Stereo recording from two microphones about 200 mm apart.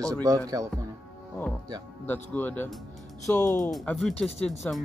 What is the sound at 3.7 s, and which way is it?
Speech, centre (ahead or behind).